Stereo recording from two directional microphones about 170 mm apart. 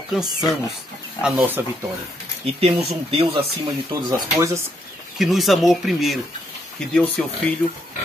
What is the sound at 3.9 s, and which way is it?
Speech, 20° right (ahead or behind).